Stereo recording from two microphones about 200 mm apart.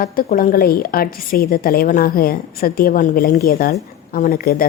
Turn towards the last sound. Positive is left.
turn(degrees=50)  # may be behind; listen again after turning